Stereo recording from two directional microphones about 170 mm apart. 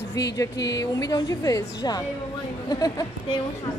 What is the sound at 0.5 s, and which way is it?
Speech, 90° left.